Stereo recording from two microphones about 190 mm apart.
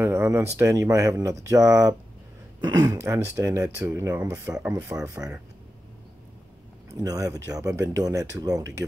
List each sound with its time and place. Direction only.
0.0 s speech: 15° right (ahead or behind)
6.9 s speech: 20° right (ahead or behind)